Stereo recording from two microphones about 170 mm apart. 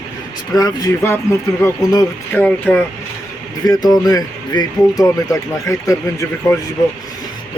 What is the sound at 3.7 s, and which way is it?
Speech, 20° left (ahead or behind).